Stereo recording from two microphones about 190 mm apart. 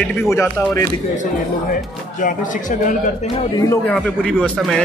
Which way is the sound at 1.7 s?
45° left (ahead or behind).